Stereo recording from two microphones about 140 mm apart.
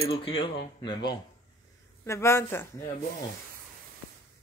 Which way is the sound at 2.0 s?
20° left (ahead or behind).